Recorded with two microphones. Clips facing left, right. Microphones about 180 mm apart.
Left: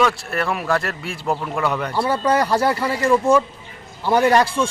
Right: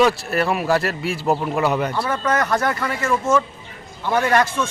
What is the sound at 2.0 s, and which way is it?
A man's voice, 30° left (ahead or behind).